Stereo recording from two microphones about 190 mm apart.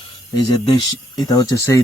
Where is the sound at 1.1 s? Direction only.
20° left (ahead or behind).